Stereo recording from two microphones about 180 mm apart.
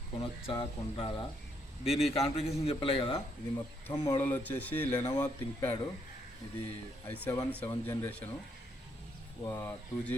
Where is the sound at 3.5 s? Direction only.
15° left (ahead or behind).